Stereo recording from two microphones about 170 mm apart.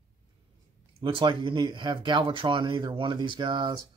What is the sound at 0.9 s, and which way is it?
Speech, 30° right (ahead or behind).